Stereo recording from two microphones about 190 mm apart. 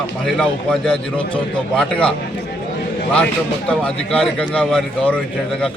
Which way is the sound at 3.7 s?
5° left (ahead or behind).